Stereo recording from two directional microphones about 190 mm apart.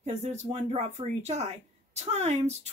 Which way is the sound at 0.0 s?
35° right (ahead or behind).